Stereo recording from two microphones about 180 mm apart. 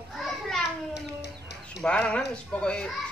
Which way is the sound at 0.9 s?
70° left (ahead or behind).